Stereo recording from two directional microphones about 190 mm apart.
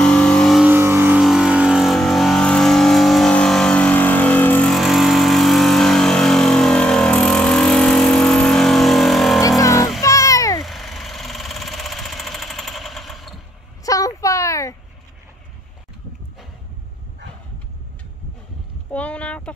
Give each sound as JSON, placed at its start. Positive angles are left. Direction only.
{"t": 0.0, "sound": "music", "side_deg": 5}
{"t": 0.7, "sound": "music", "side_deg": -10}
{"t": 1.2, "sound": "vehicle", "side_deg": 0}
{"t": 10.0, "sound": "music", "side_deg": 15}
{"t": 10.6, "sound": "engine", "side_deg": 0}
{"t": 13.8, "sound": "a sound", "side_deg": 15}
{"t": 18.9, "sound": "a sound", "side_deg": 5}